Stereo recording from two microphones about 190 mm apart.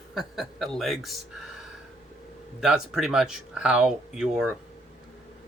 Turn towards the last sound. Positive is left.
turn(degrees=-5)  # may be behind; listen again after turning